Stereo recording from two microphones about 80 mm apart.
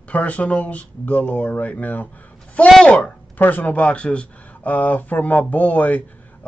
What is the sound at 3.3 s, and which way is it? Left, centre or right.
Speech, left.